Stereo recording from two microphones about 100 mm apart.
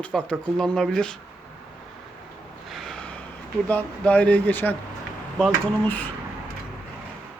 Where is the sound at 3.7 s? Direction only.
15° left (ahead or behind).